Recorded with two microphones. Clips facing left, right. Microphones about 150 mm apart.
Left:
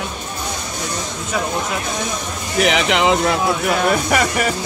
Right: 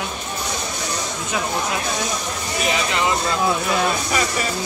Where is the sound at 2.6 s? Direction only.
85° left.